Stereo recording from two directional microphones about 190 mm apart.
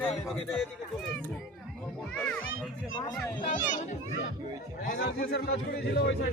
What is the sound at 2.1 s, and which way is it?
Speech, 5° left (ahead or behind).